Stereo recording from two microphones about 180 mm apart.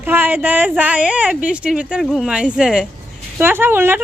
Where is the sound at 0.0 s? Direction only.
10° right (ahead or behind).